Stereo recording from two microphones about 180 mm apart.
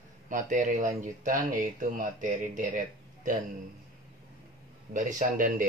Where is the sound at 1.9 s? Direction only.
45° right (ahead or behind).